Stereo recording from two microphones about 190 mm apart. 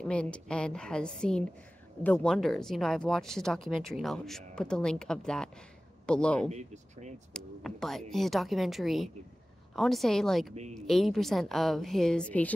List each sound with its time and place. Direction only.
0.1 s a woman's voice: 5° left (ahead or behind)
6.5 s speech: 40° right (ahead or behind)
7.3 s a woman's voice: centre (ahead or behind)